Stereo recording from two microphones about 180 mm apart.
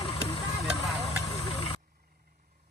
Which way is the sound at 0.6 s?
Centre (ahead or behind).